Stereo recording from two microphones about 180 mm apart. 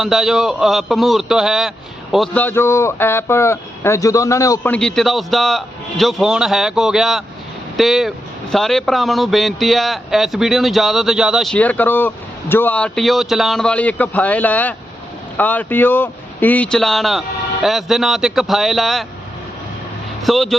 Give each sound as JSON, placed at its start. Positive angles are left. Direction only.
{"t": 0.0, "sound": "a man's voice", "side_deg": 0}
{"t": 4.7, "sound": "speech", "side_deg": 5}
{"t": 20.2, "sound": "speech", "side_deg": 0}